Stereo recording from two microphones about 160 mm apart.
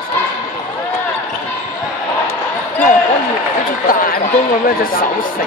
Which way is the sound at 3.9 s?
60° left (ahead or behind).